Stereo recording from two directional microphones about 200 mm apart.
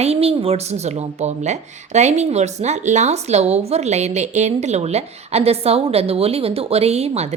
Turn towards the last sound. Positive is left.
turn(degrees=-30)  # may be behind; listen again after turning